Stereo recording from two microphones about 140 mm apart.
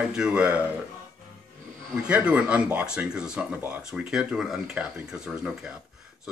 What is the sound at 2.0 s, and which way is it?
Speech, 10° right (ahead or behind).